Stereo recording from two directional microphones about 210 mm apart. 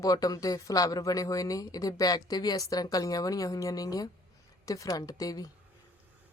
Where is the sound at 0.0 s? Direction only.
15° left (ahead or behind).